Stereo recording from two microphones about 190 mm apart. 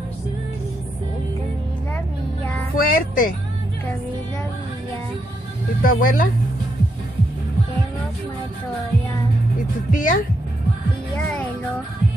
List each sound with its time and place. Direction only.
2.7 s speech: 50° left (ahead or behind)
5.8 s speech: 45° left (ahead or behind)
9.8 s speech: 45° left (ahead or behind)
11.1 s music: 10° left (ahead or behind)